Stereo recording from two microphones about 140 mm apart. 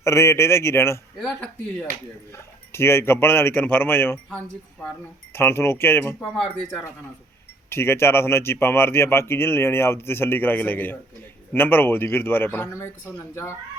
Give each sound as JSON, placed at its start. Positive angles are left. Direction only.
{"t": 0.0, "sound": "a man's voice", "side_deg": 20}
{"t": 5.3, "sound": "speech", "side_deg": 15}
{"t": 7.7, "sound": "speech", "side_deg": 15}